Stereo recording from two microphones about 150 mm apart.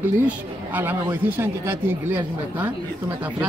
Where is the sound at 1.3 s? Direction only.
15° right (ahead or behind).